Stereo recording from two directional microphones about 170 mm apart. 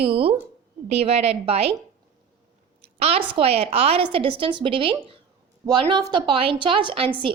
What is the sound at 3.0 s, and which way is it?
A woman's voice, 35° right (ahead or behind).